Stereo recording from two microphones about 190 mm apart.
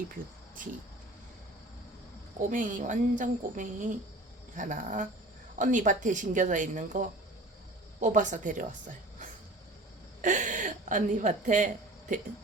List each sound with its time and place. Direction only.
2.5 s a woman's voice: 45° right (ahead or behind)
10.2 s a woman's voice: 40° right (ahead or behind)